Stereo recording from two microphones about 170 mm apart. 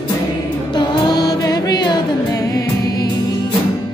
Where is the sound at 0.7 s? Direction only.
25° left (ahead or behind).